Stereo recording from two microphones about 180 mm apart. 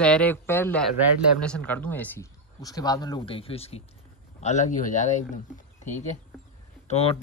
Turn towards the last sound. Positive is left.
turn(degrees=35)  # may be behind; listen again after turning